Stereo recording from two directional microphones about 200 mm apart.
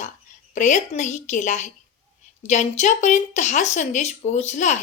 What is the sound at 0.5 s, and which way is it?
A woman's voice, 35° left (ahead or behind).